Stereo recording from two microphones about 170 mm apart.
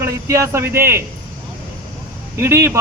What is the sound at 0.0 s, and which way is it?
A man's voice, 15° right (ahead or behind).